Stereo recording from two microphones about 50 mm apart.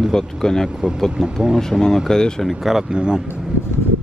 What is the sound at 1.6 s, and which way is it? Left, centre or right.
Speech, centre.